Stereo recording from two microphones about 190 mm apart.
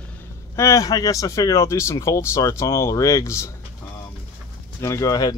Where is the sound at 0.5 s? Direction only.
15° left (ahead or behind).